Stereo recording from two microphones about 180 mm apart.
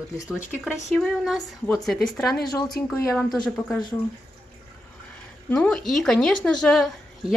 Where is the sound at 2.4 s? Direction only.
20° left (ahead or behind).